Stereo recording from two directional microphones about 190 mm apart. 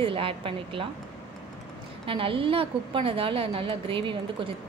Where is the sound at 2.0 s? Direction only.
30° right (ahead or behind).